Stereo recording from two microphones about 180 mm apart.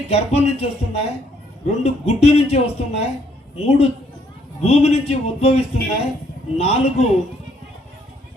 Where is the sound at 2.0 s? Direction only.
35° left (ahead or behind).